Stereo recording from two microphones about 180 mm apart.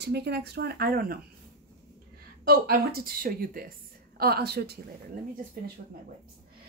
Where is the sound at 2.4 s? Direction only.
55° right (ahead or behind).